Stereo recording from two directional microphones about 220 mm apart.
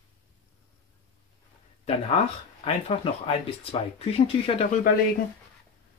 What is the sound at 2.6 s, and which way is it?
Speech, 25° left (ahead or behind).